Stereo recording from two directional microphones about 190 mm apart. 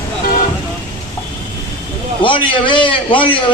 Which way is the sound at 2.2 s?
25° left (ahead or behind).